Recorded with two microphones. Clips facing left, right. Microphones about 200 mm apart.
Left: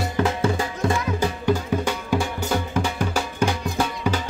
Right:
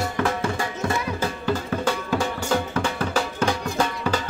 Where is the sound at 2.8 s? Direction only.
10° left (ahead or behind).